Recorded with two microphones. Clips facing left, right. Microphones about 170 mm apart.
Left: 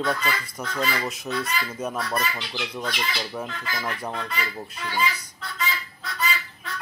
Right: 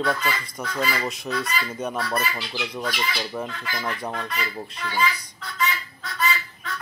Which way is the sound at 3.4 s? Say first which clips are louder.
Right 1 dB; 10° left (ahead or behind).